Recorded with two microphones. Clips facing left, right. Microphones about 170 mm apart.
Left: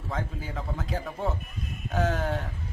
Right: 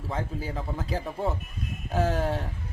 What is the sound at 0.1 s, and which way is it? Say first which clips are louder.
A man's voice: right 2 dB; 30° right (ahead or behind).